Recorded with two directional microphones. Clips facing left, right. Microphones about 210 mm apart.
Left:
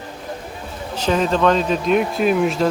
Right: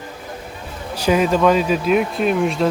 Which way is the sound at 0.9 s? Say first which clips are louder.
Right 2 dB; 10° right (ahead or behind).